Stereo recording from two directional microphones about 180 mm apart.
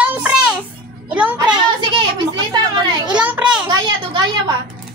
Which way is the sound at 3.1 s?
5° right (ahead or behind).